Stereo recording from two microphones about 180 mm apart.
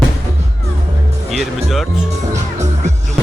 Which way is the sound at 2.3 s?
40° right (ahead or behind).